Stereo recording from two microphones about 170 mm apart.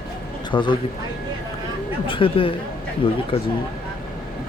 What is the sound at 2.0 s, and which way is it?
Speech, 30° left (ahead or behind).